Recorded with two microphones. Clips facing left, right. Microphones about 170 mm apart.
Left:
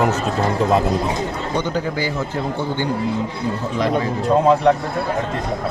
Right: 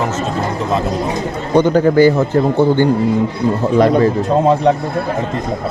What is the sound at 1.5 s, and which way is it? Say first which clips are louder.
A man's voice: right 14 dB; 55° right (ahead or behind).